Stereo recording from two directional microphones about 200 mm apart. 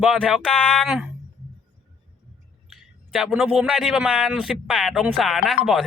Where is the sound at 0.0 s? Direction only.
Centre (ahead or behind).